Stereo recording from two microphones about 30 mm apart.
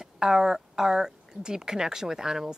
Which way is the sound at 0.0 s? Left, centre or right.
Centre.